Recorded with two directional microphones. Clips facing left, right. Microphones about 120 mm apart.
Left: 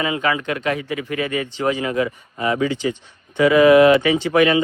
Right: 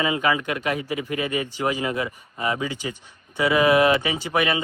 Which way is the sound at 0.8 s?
30° right (ahead or behind).